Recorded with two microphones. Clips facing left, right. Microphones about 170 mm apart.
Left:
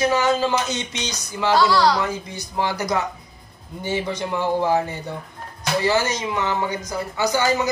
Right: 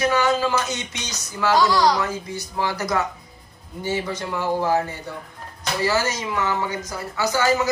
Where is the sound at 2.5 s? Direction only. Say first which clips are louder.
Left 1 dB; 20° left (ahead or behind).